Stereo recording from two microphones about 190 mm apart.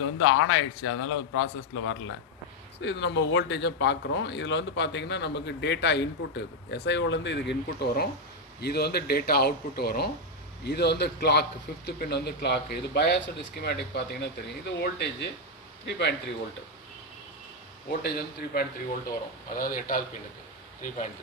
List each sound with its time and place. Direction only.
0.0 s a man's voice: 90° left
2.8 s speech: 70° left (ahead or behind)
18.0 s a man's voice: 55° left (ahead or behind)